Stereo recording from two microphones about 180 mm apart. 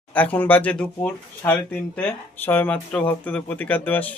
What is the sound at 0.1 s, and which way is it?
Speech, 10° left (ahead or behind).